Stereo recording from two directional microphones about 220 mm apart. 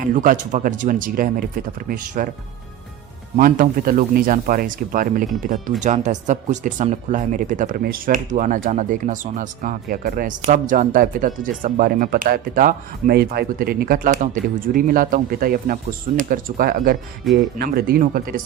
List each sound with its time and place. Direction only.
0.0 s speech: 35° right (ahead or behind)
3.3 s speech: 40° right (ahead or behind)